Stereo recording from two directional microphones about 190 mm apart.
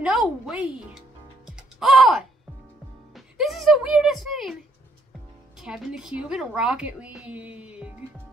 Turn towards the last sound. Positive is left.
turn(degrees=-5)  # may be behind; listen again after turning